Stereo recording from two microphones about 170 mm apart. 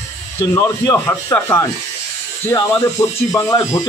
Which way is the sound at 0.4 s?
15° left (ahead or behind).